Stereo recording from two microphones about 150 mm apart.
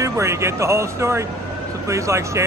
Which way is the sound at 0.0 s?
20° right (ahead or behind).